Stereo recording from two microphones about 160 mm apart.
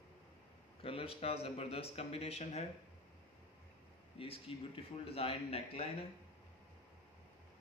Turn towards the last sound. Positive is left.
turn(degrees=40)  # may be behind; listen again after turning